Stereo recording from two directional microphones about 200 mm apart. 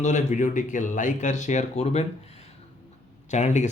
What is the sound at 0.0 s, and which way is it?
Speech, 40° left (ahead or behind).